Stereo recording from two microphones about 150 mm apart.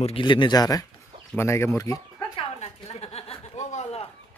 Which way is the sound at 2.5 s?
45° left (ahead or behind).